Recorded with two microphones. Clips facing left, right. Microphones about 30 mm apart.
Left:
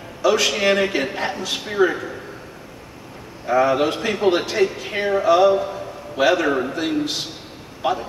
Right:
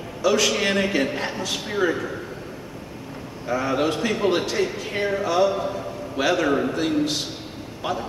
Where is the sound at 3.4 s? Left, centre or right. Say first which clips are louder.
Left 5 dB; centre.